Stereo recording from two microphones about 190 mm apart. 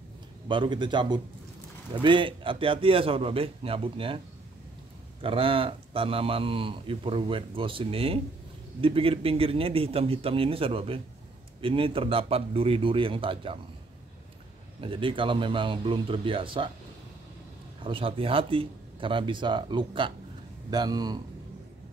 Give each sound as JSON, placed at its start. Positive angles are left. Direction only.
{"t": 0.5, "sound": "speech", "side_deg": -25}
{"t": 5.2, "sound": "speech", "side_deg": -30}
{"t": 14.8, "sound": "speech", "side_deg": -25}
{"t": 17.8, "sound": "speech", "side_deg": -30}